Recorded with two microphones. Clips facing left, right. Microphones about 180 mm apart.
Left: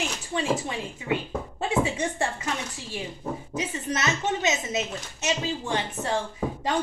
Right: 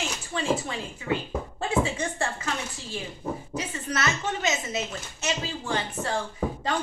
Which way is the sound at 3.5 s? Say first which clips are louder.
Left 3 dB; 20° left (ahead or behind).